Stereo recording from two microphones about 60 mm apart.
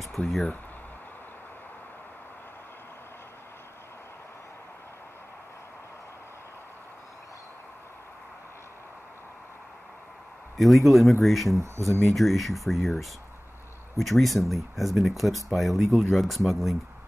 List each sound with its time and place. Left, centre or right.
0.2 s speech: left
10.6 s speech: centre
11.6 s speech: right
12.1 s speech: centre